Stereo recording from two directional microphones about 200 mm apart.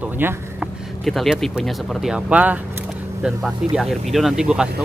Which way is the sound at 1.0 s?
Centre (ahead or behind).